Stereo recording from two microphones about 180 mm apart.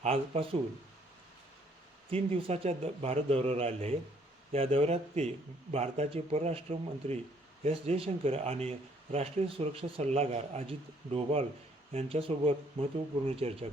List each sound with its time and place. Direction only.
0.0 s speech: 35° right (ahead or behind)
2.0 s speech: 30° right (ahead or behind)